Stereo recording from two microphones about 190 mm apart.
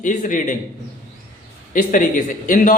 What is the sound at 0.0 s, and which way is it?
Speech, 40° left (ahead or behind).